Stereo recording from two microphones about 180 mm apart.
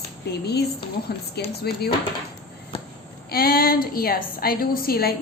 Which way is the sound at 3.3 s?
55° left (ahead or behind).